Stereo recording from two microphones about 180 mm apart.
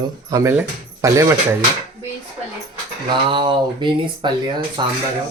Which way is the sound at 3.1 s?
30° right (ahead or behind).